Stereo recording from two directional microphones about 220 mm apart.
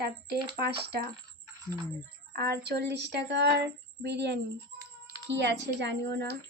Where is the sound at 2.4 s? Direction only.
45° right (ahead or behind).